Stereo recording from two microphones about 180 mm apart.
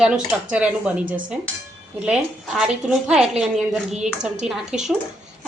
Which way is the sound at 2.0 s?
5° right (ahead or behind).